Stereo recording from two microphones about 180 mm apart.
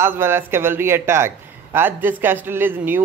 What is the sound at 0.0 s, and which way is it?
A man's voice, 15° right (ahead or behind).